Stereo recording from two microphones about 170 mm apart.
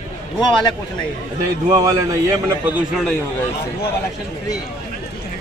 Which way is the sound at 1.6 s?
20° right (ahead or behind).